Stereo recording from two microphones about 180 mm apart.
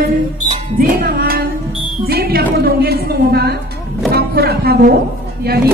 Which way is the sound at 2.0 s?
60° right (ahead or behind).